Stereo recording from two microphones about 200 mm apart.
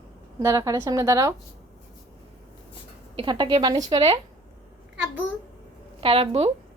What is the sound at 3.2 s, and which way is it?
A woman's voice, 25° right (ahead or behind).